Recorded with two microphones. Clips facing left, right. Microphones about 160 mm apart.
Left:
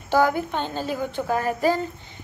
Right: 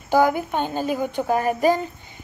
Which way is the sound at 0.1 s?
10° right (ahead or behind).